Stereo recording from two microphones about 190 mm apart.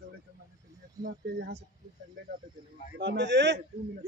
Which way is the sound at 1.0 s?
20° right (ahead or behind).